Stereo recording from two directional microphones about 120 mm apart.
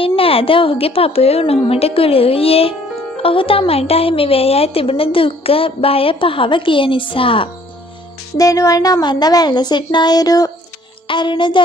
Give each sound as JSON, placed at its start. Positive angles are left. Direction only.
{"t": 0.0, "sound": "speech", "side_deg": 50}
{"t": 8.4, "sound": "speech", "side_deg": 30}